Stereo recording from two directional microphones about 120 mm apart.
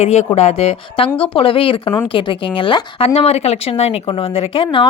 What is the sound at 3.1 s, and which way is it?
Speech, 60° left (ahead or behind).